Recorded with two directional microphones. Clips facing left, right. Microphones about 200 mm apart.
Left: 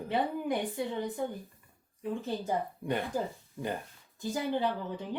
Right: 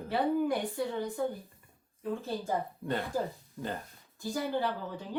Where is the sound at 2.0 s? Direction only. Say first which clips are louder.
Left 1 dB; 20° left (ahead or behind).